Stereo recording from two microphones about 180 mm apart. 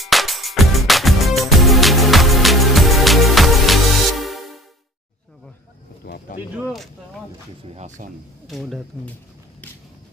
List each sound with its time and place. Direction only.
0.0 s music: centre (ahead or behind)
6.0 s a sound: 55° left (ahead or behind)
7.6 s speech: 40° right (ahead or behind)
8.5 s speech: centre (ahead or behind)